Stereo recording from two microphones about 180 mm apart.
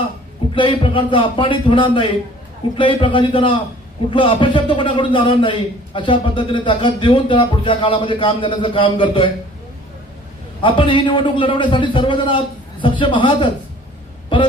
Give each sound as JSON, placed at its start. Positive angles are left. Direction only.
{"t": 0.5, "sound": "a man's voice", "side_deg": 30}
{"t": 10.6, "sound": "a man's voice", "side_deg": 30}